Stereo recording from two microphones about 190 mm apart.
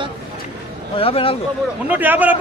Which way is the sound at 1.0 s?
30° left (ahead or behind).